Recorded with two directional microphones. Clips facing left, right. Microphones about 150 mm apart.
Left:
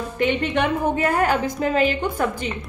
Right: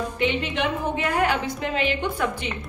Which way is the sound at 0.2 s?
50° left (ahead or behind).